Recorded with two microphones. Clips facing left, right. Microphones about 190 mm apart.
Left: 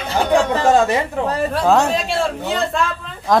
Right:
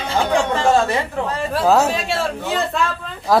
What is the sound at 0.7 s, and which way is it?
Speech, 15° left (ahead or behind).